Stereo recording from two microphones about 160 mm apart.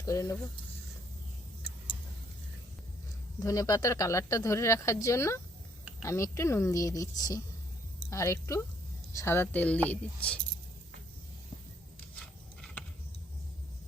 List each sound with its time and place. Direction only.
0.0 s speech: 20° left (ahead or behind)
3.4 s speech: 20° left (ahead or behind)